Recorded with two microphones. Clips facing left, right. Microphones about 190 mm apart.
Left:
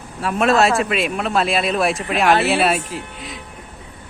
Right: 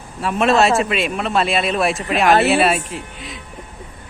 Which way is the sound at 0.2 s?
Centre (ahead or behind).